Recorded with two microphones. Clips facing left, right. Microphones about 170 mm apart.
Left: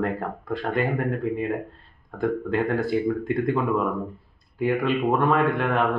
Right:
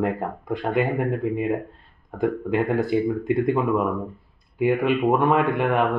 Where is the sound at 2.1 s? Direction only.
15° right (ahead or behind).